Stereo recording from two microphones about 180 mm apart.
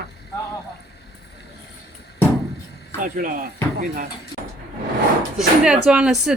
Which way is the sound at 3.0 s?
50° right (ahead or behind).